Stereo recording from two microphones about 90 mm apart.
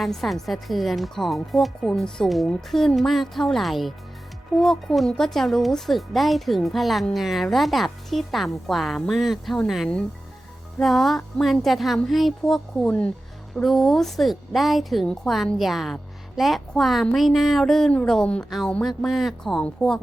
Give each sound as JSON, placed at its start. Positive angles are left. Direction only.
{"t": 0.0, "sound": "a woman's voice", "side_deg": 0}